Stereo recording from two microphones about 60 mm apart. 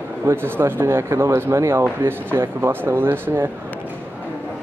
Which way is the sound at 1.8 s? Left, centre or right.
Right.